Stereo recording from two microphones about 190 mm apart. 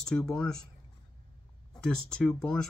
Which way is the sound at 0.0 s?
5° left (ahead or behind).